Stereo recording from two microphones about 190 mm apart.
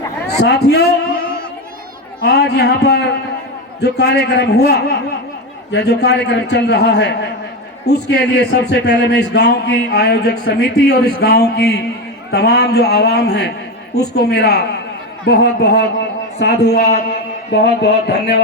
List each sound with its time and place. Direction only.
0.4 s a man's voice: 60° left (ahead or behind)
2.2 s a man's voice: 60° left (ahead or behind)